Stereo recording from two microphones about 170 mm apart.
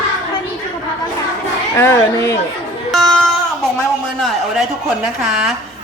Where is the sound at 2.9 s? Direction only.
Centre (ahead or behind).